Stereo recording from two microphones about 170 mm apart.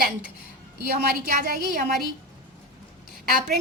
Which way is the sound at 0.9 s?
65° right (ahead or behind).